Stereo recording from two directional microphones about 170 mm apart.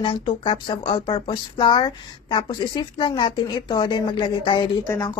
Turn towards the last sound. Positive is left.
turn(degrees=20)  # may be behind; listen again after turning